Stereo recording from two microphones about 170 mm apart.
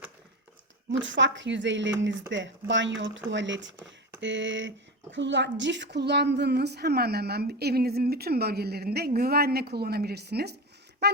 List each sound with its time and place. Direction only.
0.9 s a woman's voice: 90° right; by 10.6 s 70° right (ahead or behind)